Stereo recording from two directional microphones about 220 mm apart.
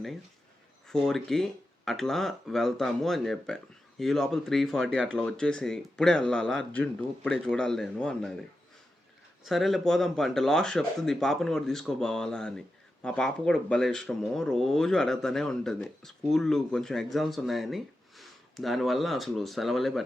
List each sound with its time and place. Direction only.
0.9 s speech: centre (ahead or behind)
9.4 s speech: centre (ahead or behind)